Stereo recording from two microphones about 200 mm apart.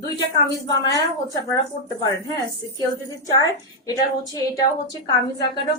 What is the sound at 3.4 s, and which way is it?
Speech, 20° left (ahead or behind).